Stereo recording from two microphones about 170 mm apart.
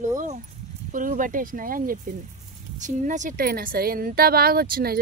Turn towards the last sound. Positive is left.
turn(degrees=-65)  # may be behind; listen again after turning